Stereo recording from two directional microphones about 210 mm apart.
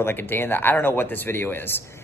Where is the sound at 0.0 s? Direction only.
10° left (ahead or behind).